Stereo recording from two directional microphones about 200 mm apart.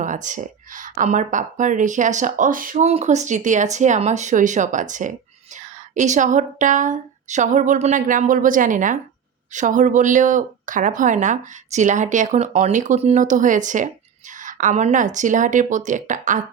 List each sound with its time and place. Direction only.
0.0 s speech: 40° right (ahead or behind)